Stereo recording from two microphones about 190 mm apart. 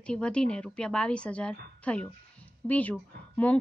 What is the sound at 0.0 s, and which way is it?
A woman's voice, 5° left (ahead or behind).